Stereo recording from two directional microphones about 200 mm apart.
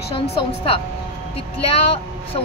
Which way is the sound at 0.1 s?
25° left (ahead or behind).